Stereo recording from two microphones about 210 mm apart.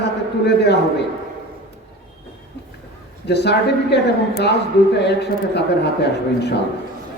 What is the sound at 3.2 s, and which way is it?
Speech, 55° left (ahead or behind).